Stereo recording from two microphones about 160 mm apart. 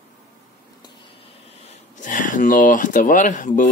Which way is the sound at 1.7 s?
50° left (ahead or behind).